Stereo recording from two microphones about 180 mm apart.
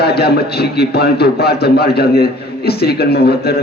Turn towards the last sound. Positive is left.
turn(degrees=60)  # may be behind; listen again after turning